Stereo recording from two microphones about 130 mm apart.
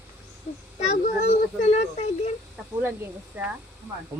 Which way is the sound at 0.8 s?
55° left (ahead or behind).